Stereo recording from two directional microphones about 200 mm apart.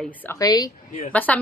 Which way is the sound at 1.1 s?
5° left (ahead or behind).